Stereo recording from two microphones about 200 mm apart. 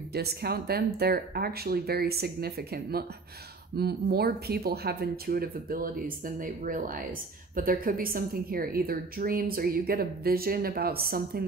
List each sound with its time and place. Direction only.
0.1 s speech: 50° right (ahead or behind)